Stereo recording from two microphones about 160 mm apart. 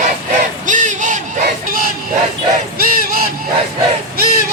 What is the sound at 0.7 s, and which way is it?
Battle cry, 55° right (ahead or behind).